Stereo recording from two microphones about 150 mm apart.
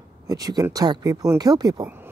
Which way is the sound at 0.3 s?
25° right (ahead or behind).